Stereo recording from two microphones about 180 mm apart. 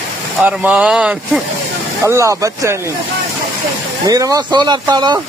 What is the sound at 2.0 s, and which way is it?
Speech, 15° right (ahead or behind).